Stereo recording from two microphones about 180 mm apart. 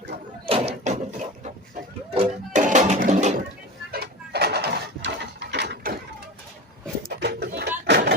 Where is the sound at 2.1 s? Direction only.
35° right (ahead or behind).